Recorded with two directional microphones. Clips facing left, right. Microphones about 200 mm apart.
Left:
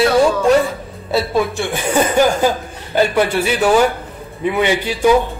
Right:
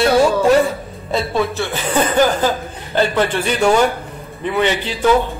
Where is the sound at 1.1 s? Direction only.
10° left (ahead or behind).